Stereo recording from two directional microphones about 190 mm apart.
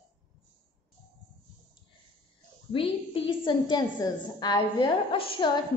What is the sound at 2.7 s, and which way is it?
A woman's voice, 30° left (ahead or behind).